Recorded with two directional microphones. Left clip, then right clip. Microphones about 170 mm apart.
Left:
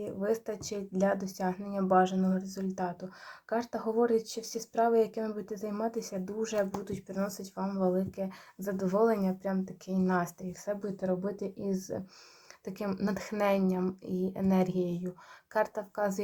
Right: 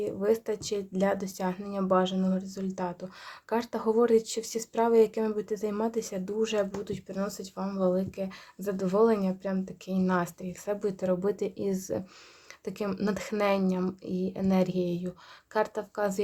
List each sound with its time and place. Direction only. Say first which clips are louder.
0.0 s speech: right 5 dB; 35° right (ahead or behind)
12.6 s speech: right 3 dB; 25° right (ahead or behind)